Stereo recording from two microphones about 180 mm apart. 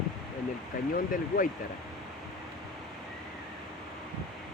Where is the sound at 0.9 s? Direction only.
50° left (ahead or behind).